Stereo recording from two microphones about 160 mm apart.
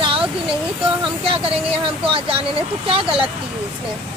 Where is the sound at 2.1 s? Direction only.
35° right (ahead or behind).